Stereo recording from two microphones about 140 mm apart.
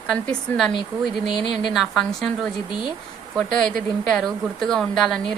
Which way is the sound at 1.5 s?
Centre (ahead or behind).